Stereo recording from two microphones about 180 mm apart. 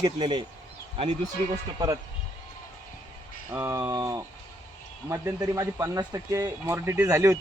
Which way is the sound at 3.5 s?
15° right (ahead or behind).